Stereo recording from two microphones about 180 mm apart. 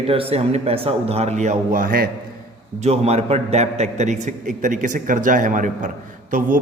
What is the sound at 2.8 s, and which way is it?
A man's voice, 35° right (ahead or behind).